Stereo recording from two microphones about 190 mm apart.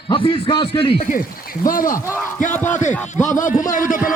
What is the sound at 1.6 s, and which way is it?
Speech, 45° left (ahead or behind).